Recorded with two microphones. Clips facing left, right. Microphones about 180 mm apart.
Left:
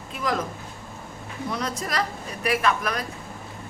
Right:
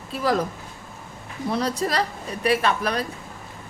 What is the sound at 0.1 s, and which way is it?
Speech, 35° right (ahead or behind).